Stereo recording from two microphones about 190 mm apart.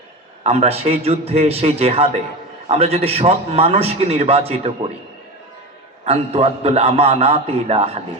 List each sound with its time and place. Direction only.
0.4 s a man's voice: 30° right (ahead or behind)
6.1 s a man's voice: 35° right (ahead or behind)